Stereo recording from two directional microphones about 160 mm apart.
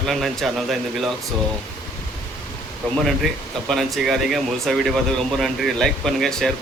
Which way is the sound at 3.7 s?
Centre (ahead or behind).